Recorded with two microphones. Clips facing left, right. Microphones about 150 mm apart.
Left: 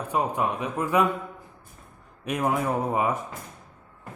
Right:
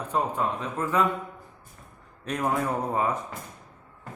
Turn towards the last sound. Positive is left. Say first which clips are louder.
# left 2 dB
turn(degrees=15)  # may be behind; listen again after turning